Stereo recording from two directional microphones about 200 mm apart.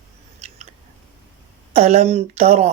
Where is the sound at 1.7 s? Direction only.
35° right (ahead or behind).